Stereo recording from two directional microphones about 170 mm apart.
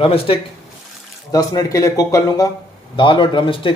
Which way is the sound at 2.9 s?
30° left (ahead or behind).